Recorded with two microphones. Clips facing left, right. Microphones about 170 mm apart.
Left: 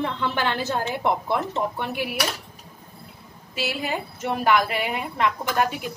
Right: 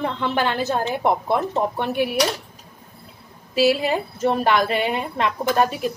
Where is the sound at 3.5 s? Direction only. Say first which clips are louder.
Right 9 dB; 35° right (ahead or behind).